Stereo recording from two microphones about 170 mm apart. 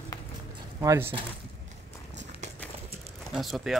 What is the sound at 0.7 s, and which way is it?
Speech, 15° right (ahead or behind).